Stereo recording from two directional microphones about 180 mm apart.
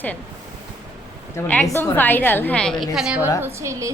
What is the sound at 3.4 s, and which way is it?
Speech, 15° right (ahead or behind).